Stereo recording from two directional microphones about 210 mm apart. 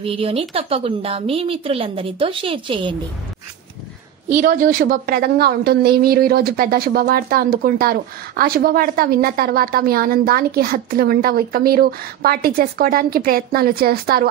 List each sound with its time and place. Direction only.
0.0 s a woman's voice: 25° right (ahead or behind)
4.3 s a woman's voice: 40° right (ahead or behind)